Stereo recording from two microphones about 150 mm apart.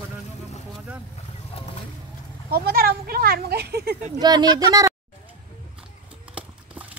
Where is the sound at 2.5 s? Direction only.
90° right.